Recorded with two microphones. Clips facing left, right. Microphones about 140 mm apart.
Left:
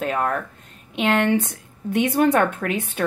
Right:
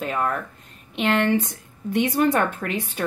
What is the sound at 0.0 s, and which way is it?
Speech, 50° left (ahead or behind).